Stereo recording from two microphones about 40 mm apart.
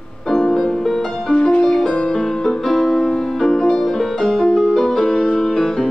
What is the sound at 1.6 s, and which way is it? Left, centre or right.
Music, centre.